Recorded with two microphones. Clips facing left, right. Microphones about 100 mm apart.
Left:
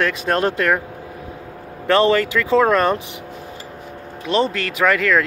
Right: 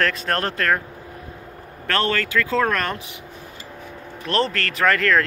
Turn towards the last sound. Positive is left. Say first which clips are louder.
# left 2 dB
turn(degrees=5)  # may be behind; listen again after turning